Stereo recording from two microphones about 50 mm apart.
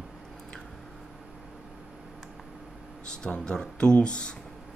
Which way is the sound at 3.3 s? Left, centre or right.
Centre.